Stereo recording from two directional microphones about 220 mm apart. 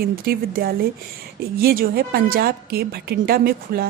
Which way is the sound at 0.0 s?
45° right (ahead or behind).